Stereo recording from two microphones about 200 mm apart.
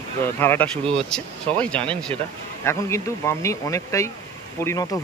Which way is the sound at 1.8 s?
25° right (ahead or behind).